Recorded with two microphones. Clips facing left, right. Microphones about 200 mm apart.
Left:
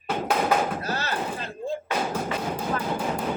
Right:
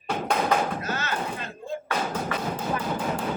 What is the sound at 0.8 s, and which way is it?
Slam, 35° left (ahead or behind).